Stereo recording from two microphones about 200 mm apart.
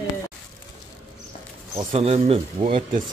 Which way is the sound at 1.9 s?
30° right (ahead or behind).